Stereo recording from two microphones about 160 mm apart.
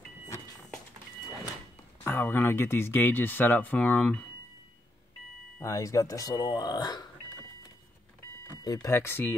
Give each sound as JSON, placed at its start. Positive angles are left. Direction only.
{"t": 2.0, "sound": "speech", "side_deg": 15}
{"t": 5.6, "sound": "speech", "side_deg": 20}
{"t": 8.6, "sound": "speech", "side_deg": 20}